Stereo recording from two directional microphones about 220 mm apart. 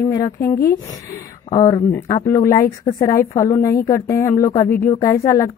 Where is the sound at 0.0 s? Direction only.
15° left (ahead or behind).